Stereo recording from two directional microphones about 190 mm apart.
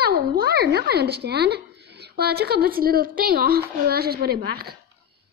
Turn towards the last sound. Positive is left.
turn(degrees=-55)  # may be behind; listen again after turning